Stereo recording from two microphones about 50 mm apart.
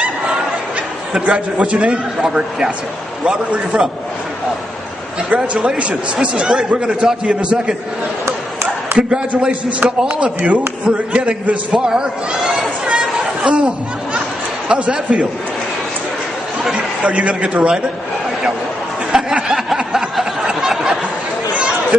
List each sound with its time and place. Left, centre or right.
1.1 s a man's voice: right
5.3 s a man's voice: right
8.9 s a man's voice: centre
11.1 s a sound: right
14.7 s a man's voice: right
16.7 s a man's voice: right
19.1 s a sound: centre